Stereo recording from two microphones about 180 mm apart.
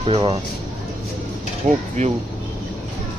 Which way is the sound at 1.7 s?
40° right (ahead or behind).